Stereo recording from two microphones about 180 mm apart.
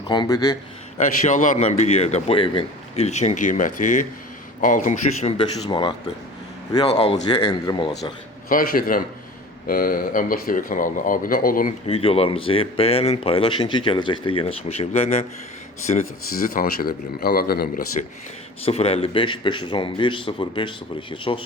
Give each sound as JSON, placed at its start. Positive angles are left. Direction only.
{"t": 0.1, "sound": "a man's voice", "side_deg": 25}
{"t": 0.9, "sound": "speech", "side_deg": 45}
{"t": 5.6, "sound": "a man's voice", "side_deg": 25}
{"t": 7.3, "sound": "a man's voice", "side_deg": 25}
{"t": 8.4, "sound": "speech", "side_deg": 50}
{"t": 11.9, "sound": "speech", "side_deg": 35}
{"t": 16.5, "sound": "speech", "side_deg": 55}
{"t": 18.6, "sound": "a man's voice", "side_deg": 35}